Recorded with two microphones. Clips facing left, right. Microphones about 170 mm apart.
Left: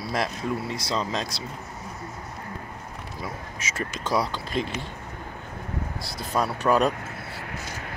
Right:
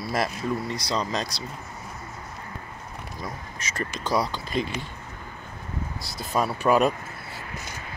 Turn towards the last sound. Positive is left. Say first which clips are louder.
# right 1 dB
turn(degrees=-5)  # may be behind; listen again after turning